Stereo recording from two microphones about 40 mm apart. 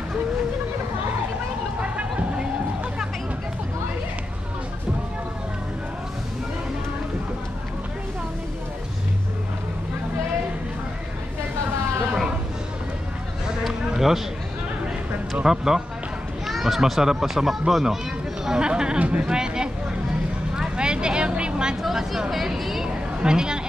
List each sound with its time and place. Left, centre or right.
1.8 s a sound: right
13.7 s a sound: centre
15.4 s speech: centre
18.9 s speech: right
19.2 s speech: centre
20.5 s vehicle: centre
21.8 s speech: centre
23.2 s speech: centre